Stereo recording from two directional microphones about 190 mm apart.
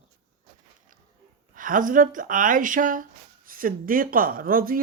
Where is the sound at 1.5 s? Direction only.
45° right (ahead or behind).